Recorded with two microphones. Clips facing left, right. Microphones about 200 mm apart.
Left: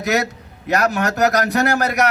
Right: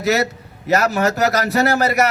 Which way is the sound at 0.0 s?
Centre (ahead or behind).